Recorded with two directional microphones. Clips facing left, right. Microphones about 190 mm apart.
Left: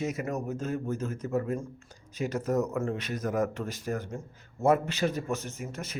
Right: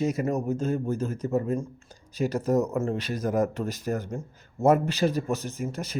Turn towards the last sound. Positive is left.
turn(degrees=-35)  # may be behind; listen again after turning